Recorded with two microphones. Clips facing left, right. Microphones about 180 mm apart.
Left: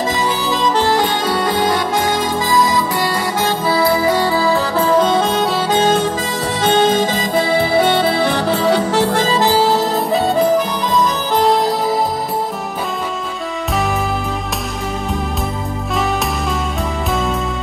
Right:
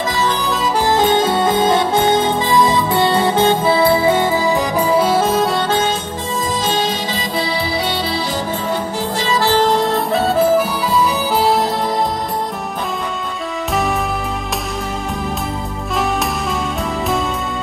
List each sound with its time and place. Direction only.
0.5 s music: 5° right (ahead or behind)
5.9 s music: 70° left (ahead or behind)
9.4 s music: 10° left (ahead or behind)